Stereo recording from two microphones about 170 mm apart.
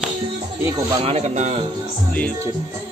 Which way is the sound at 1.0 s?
40° right (ahead or behind).